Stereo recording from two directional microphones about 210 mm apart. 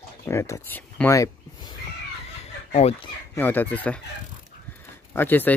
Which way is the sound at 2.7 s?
30° left (ahead or behind).